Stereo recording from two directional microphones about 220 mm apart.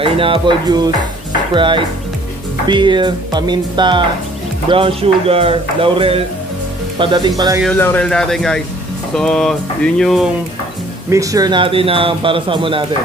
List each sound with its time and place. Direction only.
0.0 s speech: 25° right (ahead or behind)
7.6 s speech: 10° left (ahead or behind)
11.1 s speech: 15° right (ahead or behind)